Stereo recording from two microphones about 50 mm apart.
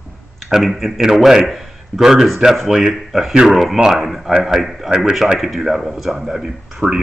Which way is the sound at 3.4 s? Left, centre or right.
Centre.